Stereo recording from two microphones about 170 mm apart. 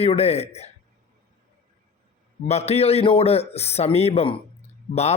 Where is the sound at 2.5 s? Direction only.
40° left (ahead or behind).